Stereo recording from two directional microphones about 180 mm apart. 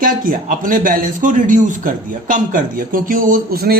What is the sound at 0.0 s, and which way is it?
A man's voice, 50° right (ahead or behind).